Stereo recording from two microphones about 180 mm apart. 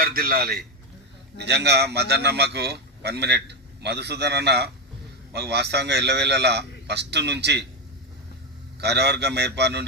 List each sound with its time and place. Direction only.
0.0 s a man's voice: 55° right (ahead or behind)
1.4 s a man's voice: 70° right (ahead or behind)
8.8 s a man's voice: 70° right (ahead or behind)